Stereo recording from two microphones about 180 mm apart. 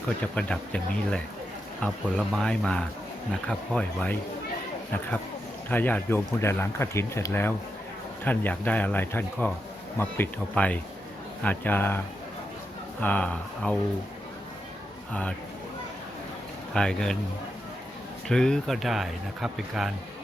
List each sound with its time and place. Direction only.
0.3 s a man's voice: 5° left (ahead or behind)
5.7 s speech: 10° left (ahead or behind)
16.7 s a man's voice: 5° left (ahead or behind)
18.3 s a man's voice: 5° left (ahead or behind)